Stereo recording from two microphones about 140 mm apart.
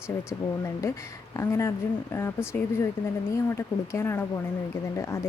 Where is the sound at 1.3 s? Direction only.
20° left (ahead or behind).